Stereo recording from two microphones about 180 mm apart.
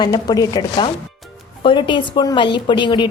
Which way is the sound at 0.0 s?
20° left (ahead or behind).